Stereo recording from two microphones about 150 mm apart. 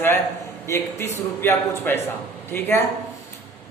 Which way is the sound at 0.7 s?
15° left (ahead or behind).